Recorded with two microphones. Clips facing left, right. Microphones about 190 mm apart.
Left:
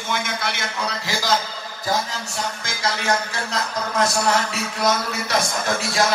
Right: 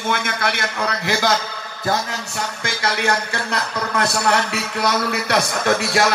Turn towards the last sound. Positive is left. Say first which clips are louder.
# right 5 dB
turn(degrees=-65)  # may be behind; listen again after turning